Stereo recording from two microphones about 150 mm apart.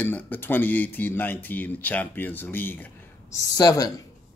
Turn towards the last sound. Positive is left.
turn(degrees=25)  # may be behind; listen again after turning